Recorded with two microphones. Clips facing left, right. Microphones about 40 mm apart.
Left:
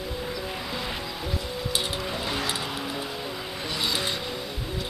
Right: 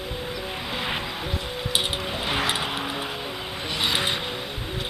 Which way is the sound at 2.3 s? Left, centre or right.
Right.